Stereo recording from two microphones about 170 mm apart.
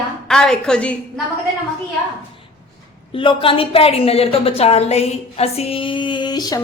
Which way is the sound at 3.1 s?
30° left (ahead or behind).